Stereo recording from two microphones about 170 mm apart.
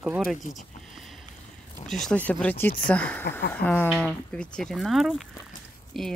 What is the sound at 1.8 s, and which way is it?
Speech, 5° left (ahead or behind).